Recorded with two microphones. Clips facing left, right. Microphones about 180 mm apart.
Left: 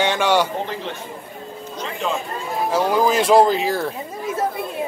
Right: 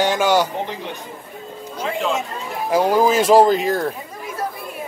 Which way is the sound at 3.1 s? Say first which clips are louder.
Right 1 dB; 40° right (ahead or behind).